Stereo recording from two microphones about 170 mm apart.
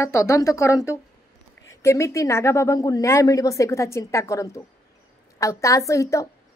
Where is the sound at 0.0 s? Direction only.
15° left (ahead or behind).